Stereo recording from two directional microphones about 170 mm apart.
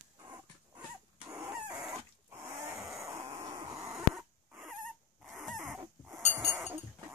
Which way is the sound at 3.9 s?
Centre (ahead or behind).